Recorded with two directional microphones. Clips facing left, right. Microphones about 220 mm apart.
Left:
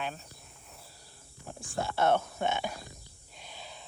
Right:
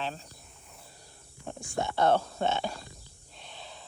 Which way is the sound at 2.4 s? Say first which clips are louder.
Right 2 dB; 15° left (ahead or behind).